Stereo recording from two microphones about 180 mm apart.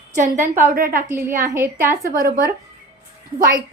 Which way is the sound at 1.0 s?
15° right (ahead or behind).